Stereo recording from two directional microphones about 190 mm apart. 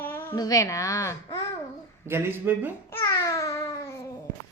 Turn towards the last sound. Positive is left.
turn(degrees=15)  # may be behind; listen again after turning